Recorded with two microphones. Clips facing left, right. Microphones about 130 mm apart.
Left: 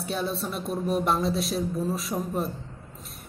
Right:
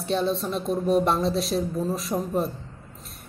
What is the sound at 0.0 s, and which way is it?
A woman's voice, 5° left (ahead or behind).